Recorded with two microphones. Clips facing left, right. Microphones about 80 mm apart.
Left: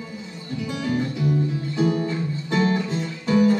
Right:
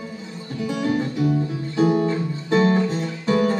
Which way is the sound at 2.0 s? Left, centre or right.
Right.